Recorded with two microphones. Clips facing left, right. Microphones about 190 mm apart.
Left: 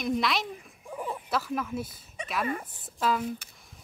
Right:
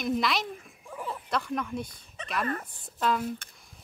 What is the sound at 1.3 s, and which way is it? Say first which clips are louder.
A woman's voice: even; 5° left (ahead or behind).